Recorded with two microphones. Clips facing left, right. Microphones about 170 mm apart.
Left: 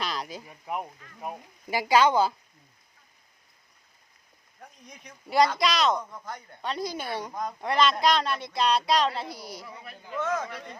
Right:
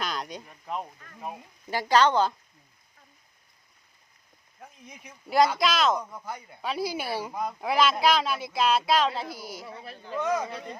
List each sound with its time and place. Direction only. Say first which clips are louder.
0.0 s a sound: even; centre (ahead or behind)
1.2 s speech: left 1 dB; 10° left (ahead or behind)
4.6 s speech: right 1 dB; 5° right (ahead or behind)
9.6 s speech: right 3 dB; 30° right (ahead or behind)
10.2 s speech: right 2 dB; 15° right (ahead or behind)